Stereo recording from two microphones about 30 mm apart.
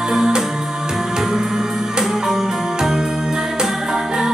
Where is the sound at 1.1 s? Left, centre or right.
Centre.